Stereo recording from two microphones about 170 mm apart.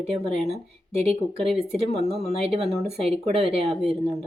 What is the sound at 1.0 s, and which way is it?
Speech, 35° right (ahead or behind).